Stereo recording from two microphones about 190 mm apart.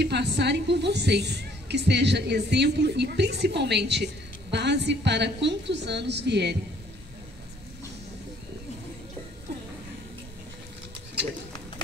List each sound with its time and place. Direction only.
0.0 s a woman's voice: 65° right (ahead or behind)